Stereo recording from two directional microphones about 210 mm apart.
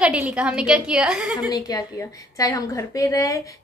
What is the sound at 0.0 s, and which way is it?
A woman's voice, 5° right (ahead or behind).